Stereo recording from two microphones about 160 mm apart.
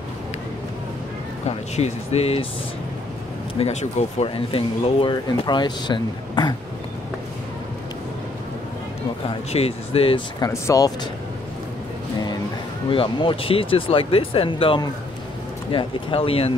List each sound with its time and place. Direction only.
1.8 s speech: 40° left (ahead or behind)
3.6 s speech: 35° left (ahead or behind)
9.5 s speech: 40° left (ahead or behind)
10.4 s speech: 20° left (ahead or behind)
12.9 s speech: 35° left (ahead or behind)